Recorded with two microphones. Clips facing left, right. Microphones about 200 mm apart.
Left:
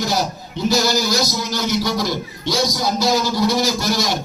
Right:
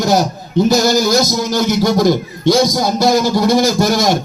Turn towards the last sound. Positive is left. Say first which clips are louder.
# right 7 dB
turn(degrees=-50)  # may be behind; listen again after turning